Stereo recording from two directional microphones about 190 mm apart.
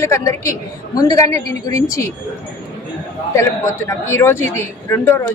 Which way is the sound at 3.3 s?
15° left (ahead or behind).